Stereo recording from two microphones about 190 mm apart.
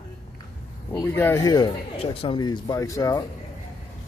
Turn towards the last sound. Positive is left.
turn(degrees=20)  # may be behind; listen again after turning